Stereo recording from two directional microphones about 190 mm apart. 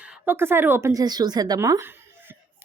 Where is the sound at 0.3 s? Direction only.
10° right (ahead or behind).